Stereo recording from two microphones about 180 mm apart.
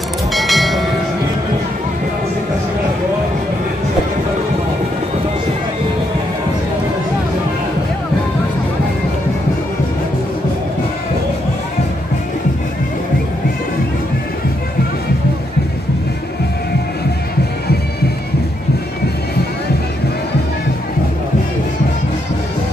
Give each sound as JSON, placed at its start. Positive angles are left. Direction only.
{"t": 0.3, "sound": "train", "side_deg": 0}